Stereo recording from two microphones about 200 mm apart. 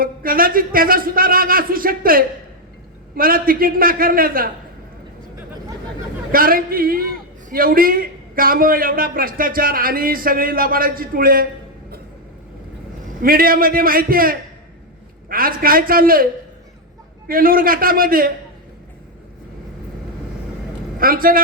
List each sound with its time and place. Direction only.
0.0 s a man's voice: 45° right (ahead or behind)
6.3 s a man's voice: 45° right (ahead or behind)
13.2 s a man's voice: 45° right (ahead or behind)
17.2 s a man's voice: 45° right (ahead or behind)
21.0 s a man's voice: 45° right (ahead or behind)